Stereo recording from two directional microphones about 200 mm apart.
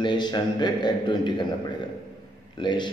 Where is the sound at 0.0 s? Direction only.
20° left (ahead or behind).